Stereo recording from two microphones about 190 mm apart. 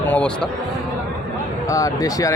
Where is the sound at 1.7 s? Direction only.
15° left (ahead or behind).